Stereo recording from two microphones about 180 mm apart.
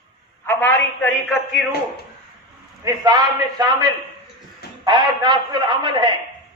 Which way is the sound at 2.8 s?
20° right (ahead or behind).